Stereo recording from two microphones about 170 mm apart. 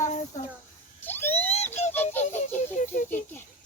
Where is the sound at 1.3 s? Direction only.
40° left (ahead or behind).